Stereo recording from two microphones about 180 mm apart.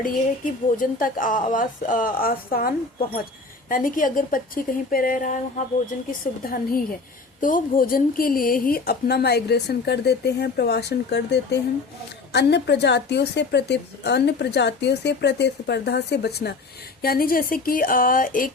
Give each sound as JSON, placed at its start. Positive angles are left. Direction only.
{"t": 0.0, "sound": "a woman's voice", "side_deg": 50}
{"t": 17.0, "sound": "a woman's voice", "side_deg": 55}